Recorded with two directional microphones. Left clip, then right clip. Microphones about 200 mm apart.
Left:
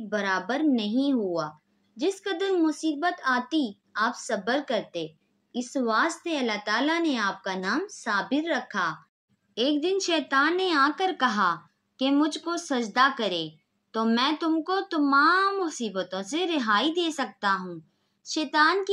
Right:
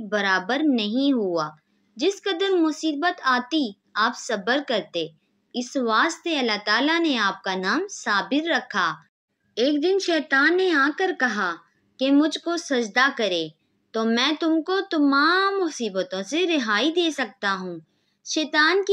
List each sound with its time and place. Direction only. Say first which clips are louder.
0.1 s a woman's voice: right 5 dB; 30° right (ahead or behind)
9.9 s a child's voice: right 3 dB; 15° right (ahead or behind)